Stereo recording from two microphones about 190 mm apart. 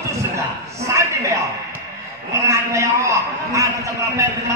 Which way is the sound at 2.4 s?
15° right (ahead or behind).